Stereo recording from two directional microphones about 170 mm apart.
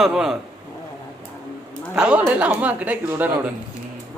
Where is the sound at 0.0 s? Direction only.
Centre (ahead or behind).